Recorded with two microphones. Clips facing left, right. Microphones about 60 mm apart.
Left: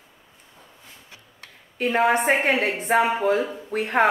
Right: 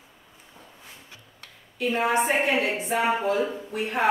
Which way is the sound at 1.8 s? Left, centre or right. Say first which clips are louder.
Left 3 dB; left.